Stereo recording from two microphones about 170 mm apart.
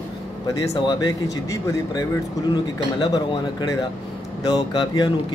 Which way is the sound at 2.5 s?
25° left (ahead or behind).